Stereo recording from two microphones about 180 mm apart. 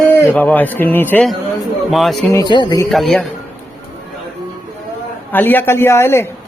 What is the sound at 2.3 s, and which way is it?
Speech, 25° left (ahead or behind).